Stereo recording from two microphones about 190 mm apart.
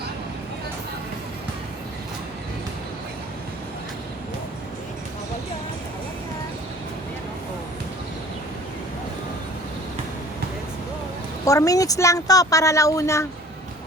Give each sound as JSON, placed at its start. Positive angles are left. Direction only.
{"t": 11.4, "sound": "speech", "side_deg": 15}